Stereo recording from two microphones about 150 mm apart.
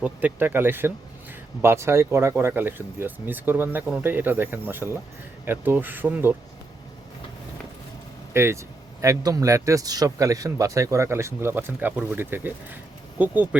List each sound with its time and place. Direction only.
0.0 s speech: 10° right (ahead or behind)
8.3 s speech: 15° right (ahead or behind)